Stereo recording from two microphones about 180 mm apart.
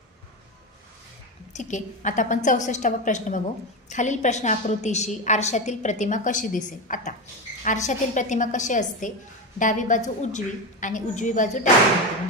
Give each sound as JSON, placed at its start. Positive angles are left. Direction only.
{"t": 1.5, "sound": "a woman's voice", "side_deg": 40}